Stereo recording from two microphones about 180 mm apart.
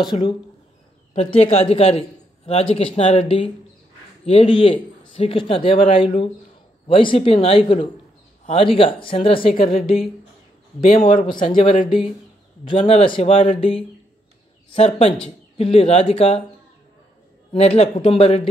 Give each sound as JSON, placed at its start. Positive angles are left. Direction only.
{"t": 0.0, "sound": "a man's voice", "side_deg": 25}
{"t": 9.5, "sound": "a woman's voice", "side_deg": 45}
{"t": 12.6, "sound": "a man's voice", "side_deg": 30}
{"t": 17.5, "sound": "a man's voice", "side_deg": 35}